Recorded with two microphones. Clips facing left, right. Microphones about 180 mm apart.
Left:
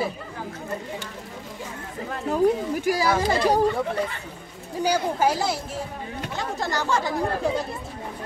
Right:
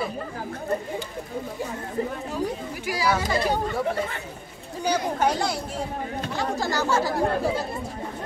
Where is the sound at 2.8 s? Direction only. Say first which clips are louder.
Left 1 dB; 45° left (ahead or behind).